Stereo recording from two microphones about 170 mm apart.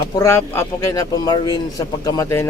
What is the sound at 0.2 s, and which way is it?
Speech, 15° left (ahead or behind).